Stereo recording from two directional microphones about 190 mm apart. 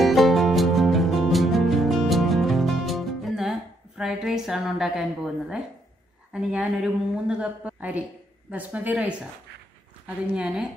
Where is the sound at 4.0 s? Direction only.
5° right (ahead or behind).